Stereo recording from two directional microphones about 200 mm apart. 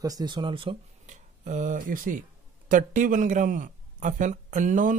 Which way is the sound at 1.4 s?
40° right (ahead or behind).